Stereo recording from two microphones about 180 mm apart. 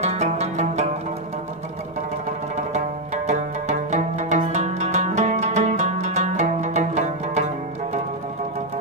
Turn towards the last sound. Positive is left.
turn(degrees=-40)  # may be behind; listen again after turning